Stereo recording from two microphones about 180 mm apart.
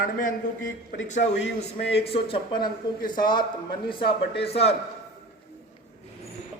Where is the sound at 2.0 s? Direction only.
30° left (ahead or behind).